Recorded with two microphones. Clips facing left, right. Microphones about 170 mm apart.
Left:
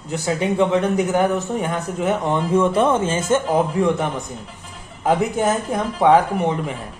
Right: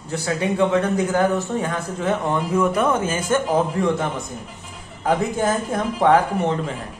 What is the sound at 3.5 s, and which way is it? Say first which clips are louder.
A man's voice: left 2 dB; 15° left (ahead or behind).